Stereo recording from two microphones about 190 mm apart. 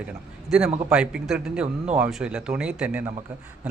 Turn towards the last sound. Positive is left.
turn(degrees=-5)  # may be behind; listen again after turning